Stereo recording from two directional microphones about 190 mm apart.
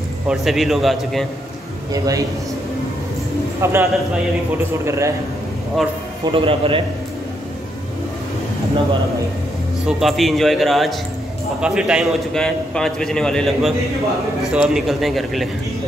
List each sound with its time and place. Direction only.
0.3 s a man's voice: centre (ahead or behind)
1.9 s a man's voice: 20° right (ahead or behind)
3.6 s a man's voice: 15° right (ahead or behind)
6.2 s a man's voice: 30° right (ahead or behind)
9.8 s a man's voice: centre (ahead or behind)